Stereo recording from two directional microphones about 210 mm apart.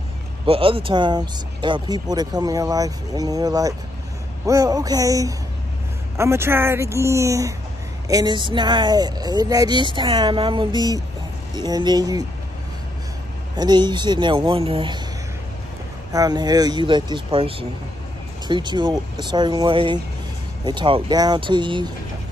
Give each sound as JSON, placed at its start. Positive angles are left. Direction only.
{"t": 0.5, "sound": "speech", "side_deg": -25}
{"t": 13.6, "sound": "speech", "side_deg": -20}
{"t": 16.1, "sound": "speech", "side_deg": -15}